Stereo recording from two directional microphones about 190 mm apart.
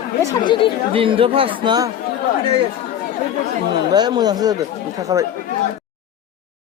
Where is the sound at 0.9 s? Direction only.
30° right (ahead or behind).